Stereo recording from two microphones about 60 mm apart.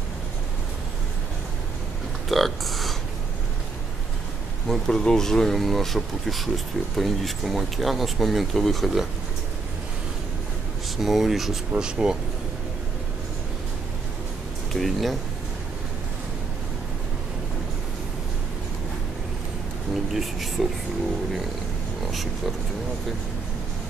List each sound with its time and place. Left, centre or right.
2.2 s speech: centre
4.6 s speech: centre
11.0 s speech: centre
11.7 s speech: centre
14.7 s speech: centre
20.1 s speech: centre